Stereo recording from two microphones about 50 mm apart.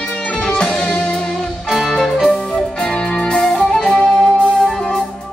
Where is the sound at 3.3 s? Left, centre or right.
Centre.